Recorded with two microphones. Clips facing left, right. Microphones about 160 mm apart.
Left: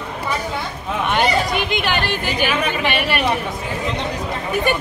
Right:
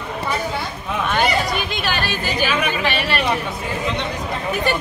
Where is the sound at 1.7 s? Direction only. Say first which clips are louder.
Left 3 dB; 55° left (ahead or behind).